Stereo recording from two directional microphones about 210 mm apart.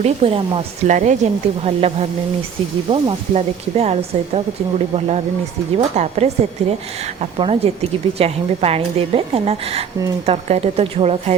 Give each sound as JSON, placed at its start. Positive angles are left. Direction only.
{"t": 0.0, "sound": "a woman's voice", "side_deg": -30}